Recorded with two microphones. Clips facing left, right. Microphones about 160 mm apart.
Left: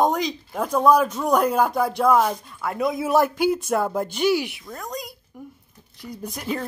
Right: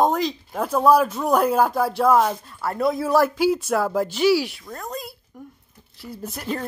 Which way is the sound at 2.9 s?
20° left (ahead or behind).